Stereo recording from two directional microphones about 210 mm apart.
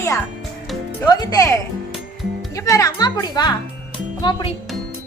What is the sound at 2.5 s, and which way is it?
A child's voice, 15° left (ahead or behind).